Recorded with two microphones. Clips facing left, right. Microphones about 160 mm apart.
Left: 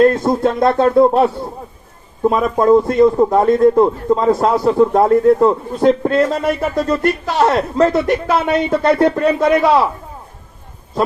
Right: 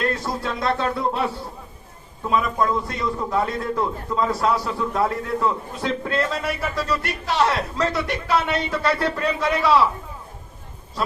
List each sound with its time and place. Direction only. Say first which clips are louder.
0.0 s a man's voice: left 13 dB; 50° left (ahead or behind)